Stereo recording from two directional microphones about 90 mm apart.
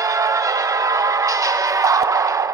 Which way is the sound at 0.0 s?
40° right (ahead or behind).